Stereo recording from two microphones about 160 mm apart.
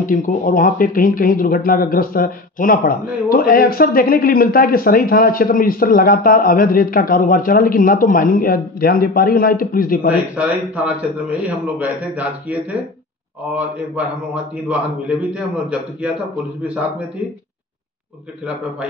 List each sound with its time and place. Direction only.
0.0 s speech: 55° left (ahead or behind)
10.0 s a man's voice: 10° right (ahead or behind)
13.6 s a man's voice: 10° right (ahead or behind)